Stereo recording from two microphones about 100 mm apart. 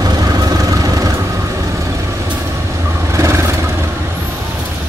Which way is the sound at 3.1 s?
30° right (ahead or behind).